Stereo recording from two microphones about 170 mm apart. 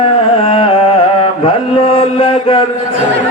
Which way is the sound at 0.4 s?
35° left (ahead or behind).